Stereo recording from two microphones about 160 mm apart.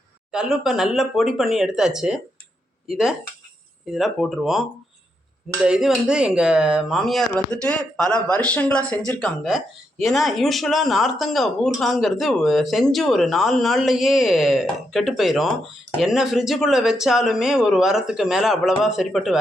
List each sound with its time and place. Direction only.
0.3 s speech: 5° right (ahead or behind)
5.6 s speech: 5° right (ahead or behind)